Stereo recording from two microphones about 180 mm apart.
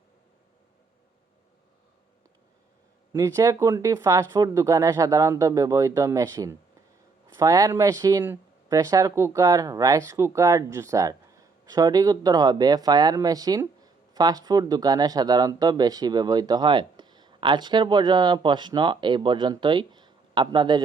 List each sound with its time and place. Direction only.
3.1 s speech: 20° right (ahead or behind)